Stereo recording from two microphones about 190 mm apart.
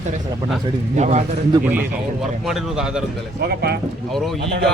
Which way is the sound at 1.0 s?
40° right (ahead or behind).